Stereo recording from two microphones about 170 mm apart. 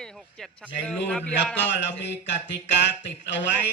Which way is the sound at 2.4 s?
90° left.